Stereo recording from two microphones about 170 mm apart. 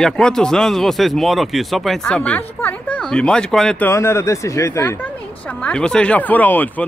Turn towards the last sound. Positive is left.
turn(degrees=10)  # may be behind; listen again after turning